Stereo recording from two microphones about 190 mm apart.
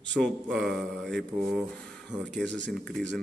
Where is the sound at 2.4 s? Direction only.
70° right (ahead or behind).